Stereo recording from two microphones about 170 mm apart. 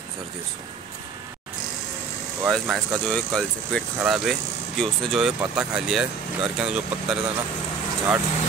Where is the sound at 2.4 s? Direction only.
5° right (ahead or behind).